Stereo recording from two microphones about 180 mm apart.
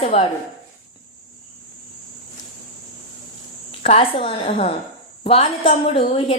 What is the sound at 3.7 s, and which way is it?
A woman's voice, 35° left (ahead or behind).